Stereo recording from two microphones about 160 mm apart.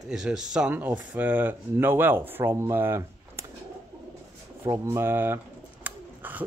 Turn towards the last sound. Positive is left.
turn(degrees=-10)  # may be behind; listen again after turning